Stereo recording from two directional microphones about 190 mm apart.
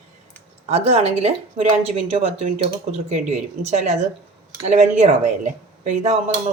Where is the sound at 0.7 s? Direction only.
35° right (ahead or behind).